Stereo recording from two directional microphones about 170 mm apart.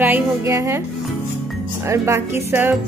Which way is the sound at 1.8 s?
15° right (ahead or behind).